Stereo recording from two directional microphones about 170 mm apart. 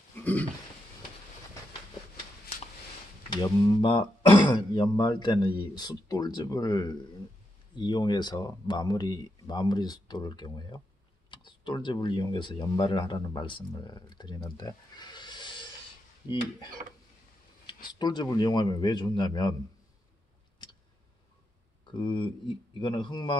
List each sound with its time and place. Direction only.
0.1 s a sound: 10° left (ahead or behind)
3.3 s speech: 20° left (ahead or behind)
14.6 s pig: 25° left (ahead or behind)
17.8 s speech: 25° left (ahead or behind)
21.9 s speech: 25° left (ahead or behind)